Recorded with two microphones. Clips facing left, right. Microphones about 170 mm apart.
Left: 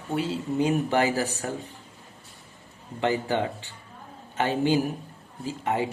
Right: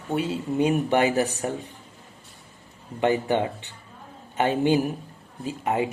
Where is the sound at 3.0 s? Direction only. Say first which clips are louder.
Right 3 dB; 20° right (ahead or behind).